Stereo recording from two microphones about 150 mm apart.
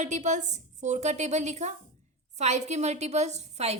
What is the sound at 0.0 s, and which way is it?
A woman's voice, 55° right (ahead or behind).